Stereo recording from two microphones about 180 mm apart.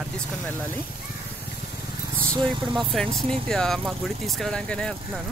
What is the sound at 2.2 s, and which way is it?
Speech, 20° right (ahead or behind).